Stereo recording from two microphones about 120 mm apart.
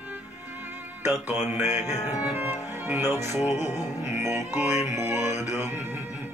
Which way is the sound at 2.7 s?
20° right (ahead or behind).